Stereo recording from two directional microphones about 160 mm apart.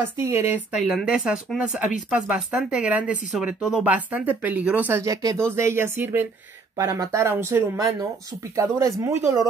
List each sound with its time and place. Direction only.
0.2 s speech: 15° right (ahead or behind)
0.8 s speech: 5° right (ahead or behind)